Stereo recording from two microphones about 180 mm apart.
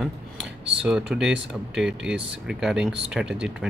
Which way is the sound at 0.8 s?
Centre (ahead or behind).